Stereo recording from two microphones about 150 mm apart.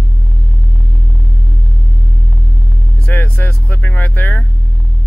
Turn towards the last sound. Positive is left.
turn(degrees=10)  # may be behind; listen again after turning